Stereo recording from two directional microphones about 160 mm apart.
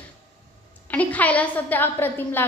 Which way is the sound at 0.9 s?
10° left (ahead or behind).